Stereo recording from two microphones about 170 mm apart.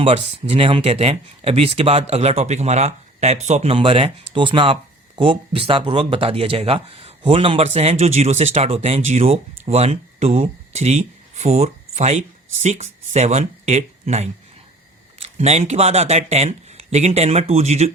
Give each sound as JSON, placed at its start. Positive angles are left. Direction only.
{"t": 0.0, "sound": "speech", "side_deg": -35}